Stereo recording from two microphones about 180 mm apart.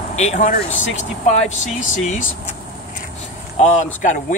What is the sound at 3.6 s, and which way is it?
Speech, 40° left (ahead or behind).